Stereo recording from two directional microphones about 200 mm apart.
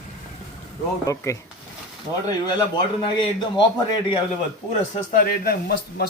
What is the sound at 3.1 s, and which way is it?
A man's voice, 25° left (ahead or behind).